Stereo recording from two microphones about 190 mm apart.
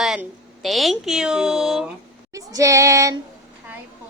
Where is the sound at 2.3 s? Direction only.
20° right (ahead or behind).